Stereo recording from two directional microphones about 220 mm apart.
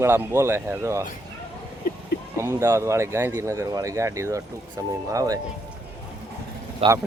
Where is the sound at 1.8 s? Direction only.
45° left (ahead or behind).